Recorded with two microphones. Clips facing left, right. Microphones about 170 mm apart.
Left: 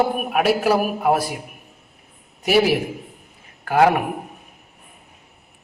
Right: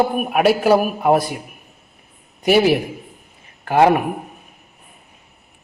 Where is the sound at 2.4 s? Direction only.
Centre (ahead or behind).